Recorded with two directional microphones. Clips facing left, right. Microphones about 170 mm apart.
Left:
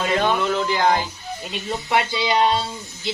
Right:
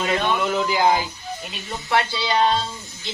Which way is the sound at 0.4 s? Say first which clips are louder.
Even; 5° right (ahead or behind).